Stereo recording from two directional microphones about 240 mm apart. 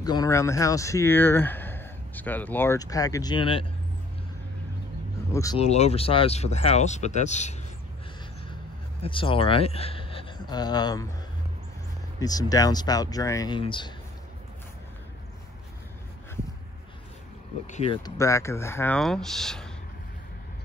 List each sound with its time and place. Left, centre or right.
0.0 s speech: centre
5.3 s speech: centre
5.6 s speech: left
9.0 s speech: left
12.2 s speech: centre
17.6 s speech: left; by 19.7 s centre